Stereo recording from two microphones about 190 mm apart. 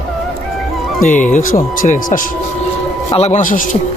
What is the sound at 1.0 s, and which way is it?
Speech, 40° left (ahead or behind).